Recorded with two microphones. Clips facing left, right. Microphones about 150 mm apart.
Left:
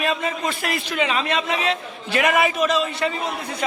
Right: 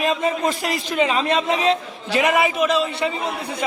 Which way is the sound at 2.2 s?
20° right (ahead or behind).